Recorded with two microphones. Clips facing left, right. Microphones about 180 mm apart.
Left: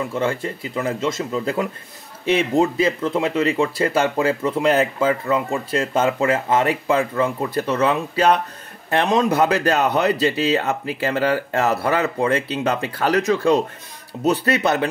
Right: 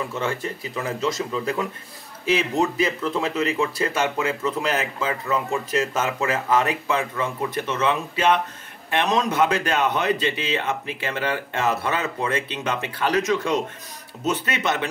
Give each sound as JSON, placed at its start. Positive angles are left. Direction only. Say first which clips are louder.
{"t": 0.1, "sound": "speech", "louder": "left 4 dB", "side_deg": 30}